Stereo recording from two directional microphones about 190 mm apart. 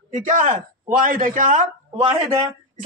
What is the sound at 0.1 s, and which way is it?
Speech, 45° right (ahead or behind).